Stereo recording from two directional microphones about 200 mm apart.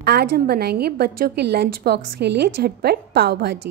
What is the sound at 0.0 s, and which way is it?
A woman's voice, 50° right (ahead or behind).